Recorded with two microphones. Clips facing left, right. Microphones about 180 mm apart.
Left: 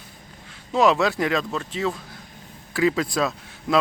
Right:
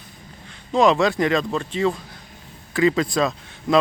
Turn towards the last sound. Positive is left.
turn(degrees=5)  # may be behind; listen again after turning